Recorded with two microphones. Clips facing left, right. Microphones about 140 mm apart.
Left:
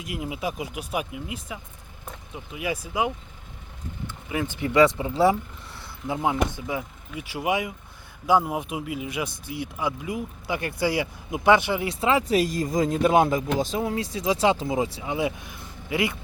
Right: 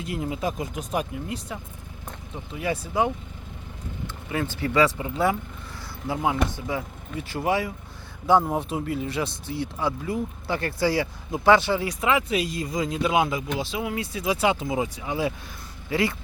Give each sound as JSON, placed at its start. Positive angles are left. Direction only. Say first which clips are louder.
{"t": 0.0, "sound": "speech", "louder": "right 2 dB", "side_deg": 10}
{"t": 6.1, "sound": "speech", "louder": "even", "side_deg": 20}